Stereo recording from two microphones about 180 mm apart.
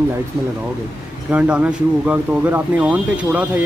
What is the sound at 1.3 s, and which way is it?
Speech, 5° right (ahead or behind).